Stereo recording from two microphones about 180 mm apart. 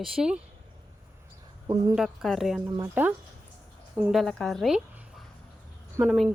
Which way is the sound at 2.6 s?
15° right (ahead or behind).